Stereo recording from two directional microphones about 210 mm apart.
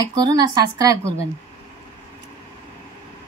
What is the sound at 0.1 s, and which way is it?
Speech, 20° right (ahead or behind).